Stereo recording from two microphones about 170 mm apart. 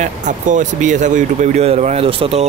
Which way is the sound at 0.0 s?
45° right (ahead or behind).